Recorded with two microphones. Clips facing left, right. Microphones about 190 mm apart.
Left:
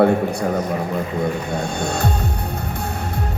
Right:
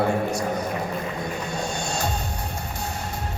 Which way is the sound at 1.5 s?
60° left (ahead or behind).